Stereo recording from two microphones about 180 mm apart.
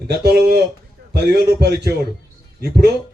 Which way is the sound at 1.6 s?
65° right (ahead or behind).